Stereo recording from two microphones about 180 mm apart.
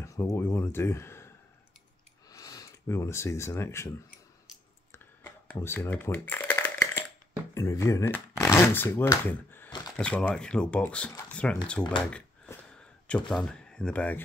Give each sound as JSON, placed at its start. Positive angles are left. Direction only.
{"t": 0.0, "sound": "speech", "side_deg": 15}
{"t": 4.9, "sound": "shuffling cards", "side_deg": 15}
{"t": 7.5, "sound": "speech", "side_deg": 15}
{"t": 12.1, "sound": "a sound", "side_deg": 5}